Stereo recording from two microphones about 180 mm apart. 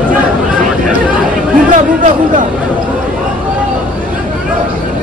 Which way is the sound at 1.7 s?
45° right (ahead or behind).